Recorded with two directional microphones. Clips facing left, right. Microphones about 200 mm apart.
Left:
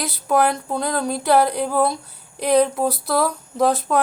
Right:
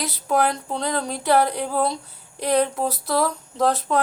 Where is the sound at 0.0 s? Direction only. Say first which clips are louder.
Left 2 dB; 10° left (ahead or behind).